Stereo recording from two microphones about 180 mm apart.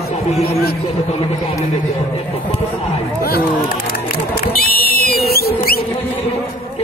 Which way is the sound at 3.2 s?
55° left (ahead or behind).